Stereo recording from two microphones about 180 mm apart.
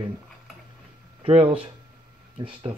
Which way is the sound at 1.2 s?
30° right (ahead or behind).